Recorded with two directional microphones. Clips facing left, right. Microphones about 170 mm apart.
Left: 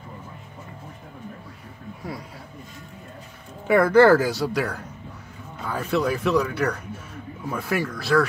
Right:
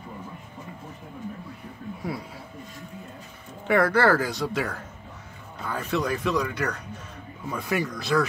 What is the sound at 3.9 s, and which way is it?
Speech, 10° left (ahead or behind).